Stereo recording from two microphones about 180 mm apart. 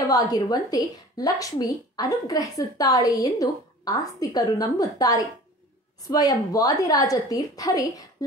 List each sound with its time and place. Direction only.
0.1 s a woman's voice: 20° left (ahead or behind)